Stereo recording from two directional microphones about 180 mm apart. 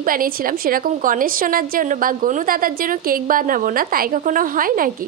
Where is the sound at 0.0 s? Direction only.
50° right (ahead or behind).